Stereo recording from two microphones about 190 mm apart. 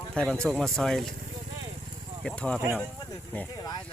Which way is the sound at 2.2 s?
5° left (ahead or behind).